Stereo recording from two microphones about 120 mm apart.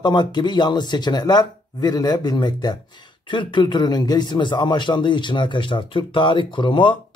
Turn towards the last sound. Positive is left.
turn(degrees=40)  # may be behind; listen again after turning